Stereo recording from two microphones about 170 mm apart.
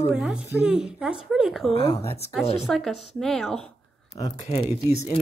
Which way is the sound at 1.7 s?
35° left (ahead or behind).